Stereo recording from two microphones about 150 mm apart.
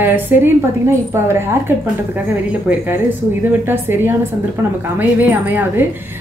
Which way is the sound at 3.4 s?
15° right (ahead or behind).